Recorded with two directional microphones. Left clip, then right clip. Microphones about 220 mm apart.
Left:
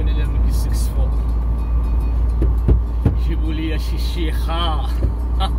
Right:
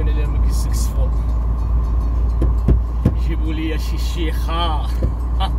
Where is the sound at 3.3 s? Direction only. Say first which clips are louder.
Right 1 dB; 15° right (ahead or behind).